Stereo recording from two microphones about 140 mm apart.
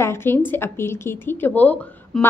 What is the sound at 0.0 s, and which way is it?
A woman's voice, 20° left (ahead or behind).